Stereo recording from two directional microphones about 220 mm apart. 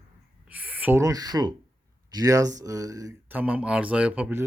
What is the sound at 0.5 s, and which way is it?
Speech, 5° right (ahead or behind).